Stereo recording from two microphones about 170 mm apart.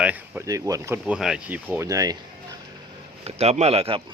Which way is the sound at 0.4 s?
20° right (ahead or behind).